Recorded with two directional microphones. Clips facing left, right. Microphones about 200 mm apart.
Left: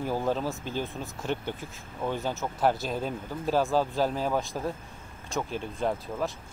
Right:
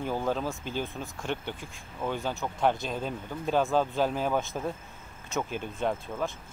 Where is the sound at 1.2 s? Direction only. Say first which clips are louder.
Left 2 dB; 40° left (ahead or behind).